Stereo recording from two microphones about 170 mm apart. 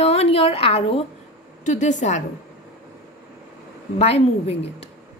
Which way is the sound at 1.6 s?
45° left (ahead or behind).